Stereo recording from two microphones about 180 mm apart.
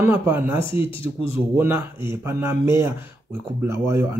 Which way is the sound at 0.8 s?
30° left (ahead or behind).